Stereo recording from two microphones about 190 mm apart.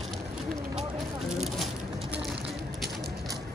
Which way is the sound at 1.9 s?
30° right (ahead or behind).